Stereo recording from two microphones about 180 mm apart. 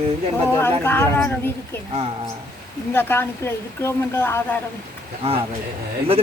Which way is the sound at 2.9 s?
10° left (ahead or behind).